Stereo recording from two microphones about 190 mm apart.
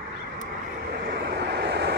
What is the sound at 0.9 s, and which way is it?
Vehicle, 60° right (ahead or behind).